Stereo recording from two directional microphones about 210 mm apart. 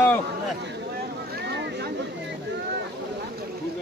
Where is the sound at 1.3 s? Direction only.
55° right (ahead or behind).